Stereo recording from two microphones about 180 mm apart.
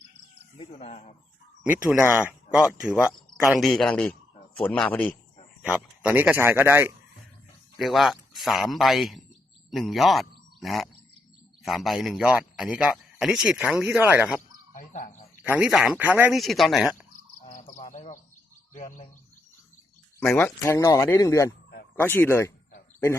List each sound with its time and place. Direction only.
0.5 s speech: 35° left (ahead or behind)
1.6 s a man's voice: 10° right (ahead or behind); by 5.1 s 5° left (ahead or behind)
5.7 s speech: 5° right (ahead or behind)
7.8 s a man's voice: centre (ahead or behind)
14.7 s speech: 45° left (ahead or behind)
15.4 s speech: 10° right (ahead or behind)
16.4 s a man's voice: centre (ahead or behind)
17.4 s bird: 45° left (ahead or behind)
18.7 s speech: 45° left (ahead or behind)
20.1 s speech: 10° left (ahead or behind)